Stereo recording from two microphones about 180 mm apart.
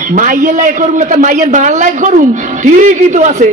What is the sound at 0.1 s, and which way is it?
A man's voice, 50° right (ahead or behind).